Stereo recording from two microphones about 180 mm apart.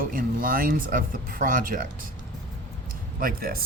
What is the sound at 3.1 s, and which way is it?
Speech, 55° right (ahead or behind).